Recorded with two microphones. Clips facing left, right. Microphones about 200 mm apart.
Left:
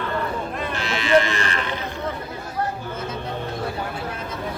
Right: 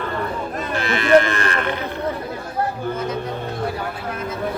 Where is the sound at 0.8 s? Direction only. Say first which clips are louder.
Right 4 dB; 55° right (ahead or behind).